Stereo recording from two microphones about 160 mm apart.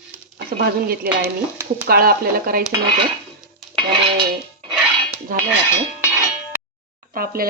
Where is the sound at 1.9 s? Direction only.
65° right (ahead or behind).